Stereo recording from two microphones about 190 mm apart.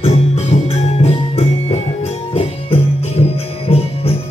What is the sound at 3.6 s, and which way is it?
Music, 30° left (ahead or behind).